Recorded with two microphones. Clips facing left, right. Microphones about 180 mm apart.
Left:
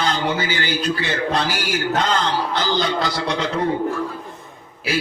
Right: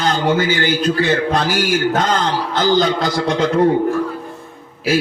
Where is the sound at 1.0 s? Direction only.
45° right (ahead or behind).